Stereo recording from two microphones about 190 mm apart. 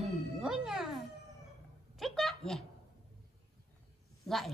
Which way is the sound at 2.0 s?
Centre (ahead or behind).